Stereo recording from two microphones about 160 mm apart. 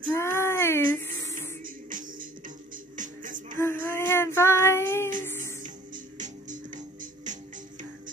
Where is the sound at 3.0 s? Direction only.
55° right (ahead or behind).